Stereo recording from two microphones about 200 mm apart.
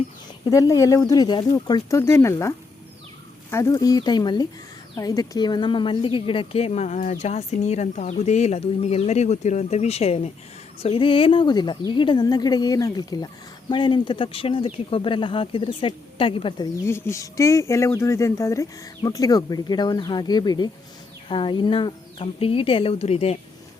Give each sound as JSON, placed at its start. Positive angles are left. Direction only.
{"t": 0.5, "sound": "a woman's voice", "side_deg": 15}
{"t": 16.8, "sound": "speech", "side_deg": 10}